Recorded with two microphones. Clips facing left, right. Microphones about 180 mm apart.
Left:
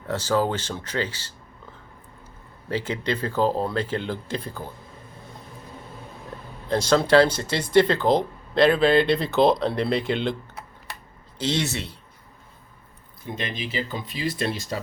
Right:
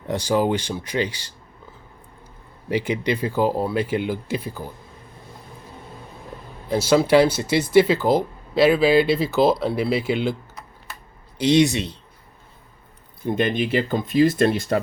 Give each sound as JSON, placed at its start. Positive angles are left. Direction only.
{"t": 0.0, "sound": "speech", "side_deg": -15}
{"t": 2.6, "sound": "speech", "side_deg": -15}
{"t": 6.7, "sound": "speech", "side_deg": -10}
{"t": 11.3, "sound": "speech", "side_deg": -15}
{"t": 13.2, "sound": "speech", "side_deg": -55}